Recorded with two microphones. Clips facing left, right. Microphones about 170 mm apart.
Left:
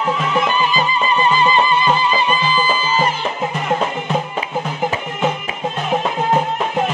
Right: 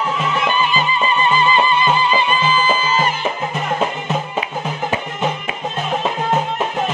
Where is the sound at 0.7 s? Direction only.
40° left (ahead or behind).